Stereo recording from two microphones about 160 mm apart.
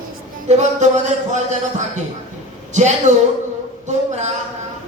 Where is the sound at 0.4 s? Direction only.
45° right (ahead or behind).